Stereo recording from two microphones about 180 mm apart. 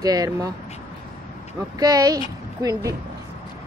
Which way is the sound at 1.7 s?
20° right (ahead or behind).